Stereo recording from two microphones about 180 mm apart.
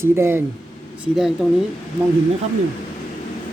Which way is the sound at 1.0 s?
Centre (ahead or behind).